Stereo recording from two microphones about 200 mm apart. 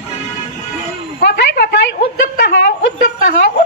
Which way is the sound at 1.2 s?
55° left (ahead or behind).